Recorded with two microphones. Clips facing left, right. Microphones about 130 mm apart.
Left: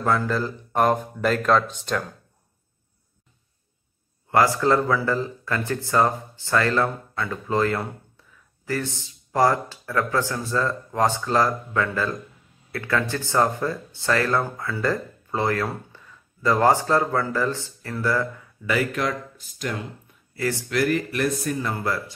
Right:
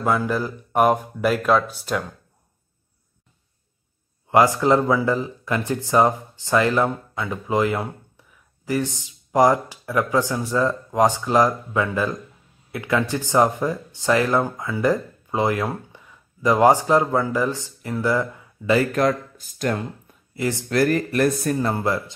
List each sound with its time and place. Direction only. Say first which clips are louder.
0.0 s speech: right 1 dB; 15° right (ahead or behind)
4.3 s speech: right 3 dB; 15° right (ahead or behind)
18.7 s speech: right 5 dB; 40° right (ahead or behind)
20.3 s speech: right 1 dB; 20° right (ahead or behind)
20.6 s speech: right 4 dB; 40° right (ahead or behind)
21.7 s speech: right 4 dB; 20° right (ahead or behind)